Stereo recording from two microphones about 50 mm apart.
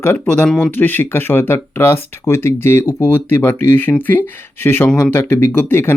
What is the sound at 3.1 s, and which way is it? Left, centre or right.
Speech, left.